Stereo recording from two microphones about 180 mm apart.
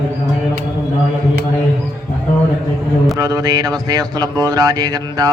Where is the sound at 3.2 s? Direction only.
20° right (ahead or behind).